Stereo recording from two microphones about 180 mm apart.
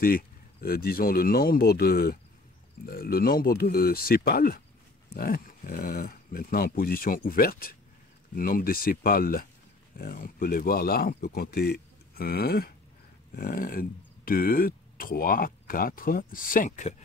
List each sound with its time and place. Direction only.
0.0 s speech: 55° left (ahead or behind)